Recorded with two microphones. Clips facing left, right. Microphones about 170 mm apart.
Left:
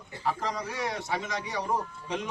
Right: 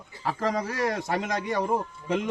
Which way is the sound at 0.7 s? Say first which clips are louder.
Right 5 dB; 55° right (ahead or behind).